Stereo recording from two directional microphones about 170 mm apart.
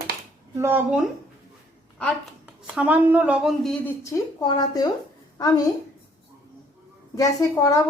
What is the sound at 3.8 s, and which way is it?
A woman's voice, 20° left (ahead or behind).